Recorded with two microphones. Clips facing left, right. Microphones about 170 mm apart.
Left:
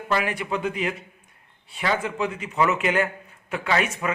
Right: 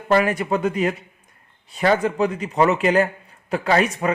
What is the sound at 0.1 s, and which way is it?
A man's voice, 40° right (ahead or behind).